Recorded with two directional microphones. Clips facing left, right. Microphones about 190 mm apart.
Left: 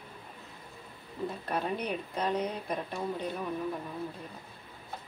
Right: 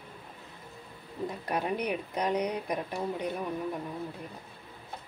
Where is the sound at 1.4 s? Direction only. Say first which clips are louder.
Right 3 dB; 15° right (ahead or behind).